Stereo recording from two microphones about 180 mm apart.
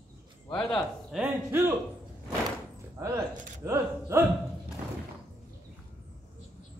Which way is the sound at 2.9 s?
15° right (ahead or behind).